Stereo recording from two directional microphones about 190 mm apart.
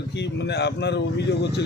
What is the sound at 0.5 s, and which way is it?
Speech, 65° left (ahead or behind).